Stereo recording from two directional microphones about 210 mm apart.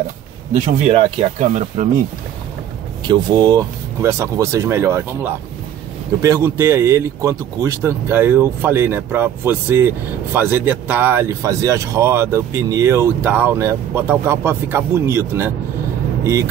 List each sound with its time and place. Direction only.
0.8 s speech: 30° right (ahead or behind)
3.0 s speech: 20° right (ahead or behind)